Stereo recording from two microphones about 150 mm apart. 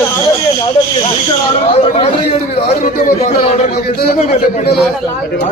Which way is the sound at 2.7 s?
70° left (ahead or behind).